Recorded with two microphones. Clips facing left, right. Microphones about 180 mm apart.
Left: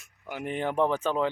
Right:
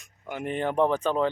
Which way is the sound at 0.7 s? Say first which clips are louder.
Right 2 dB; 15° right (ahead or behind).